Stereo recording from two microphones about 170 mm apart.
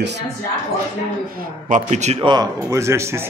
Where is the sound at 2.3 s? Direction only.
20° right (ahead or behind).